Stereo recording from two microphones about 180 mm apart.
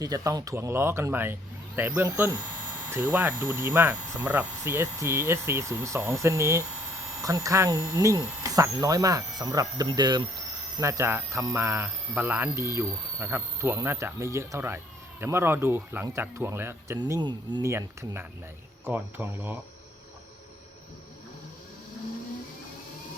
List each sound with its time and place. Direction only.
0.0 s speech: 20° right (ahead or behind)
17.0 s speech: 25° right (ahead or behind)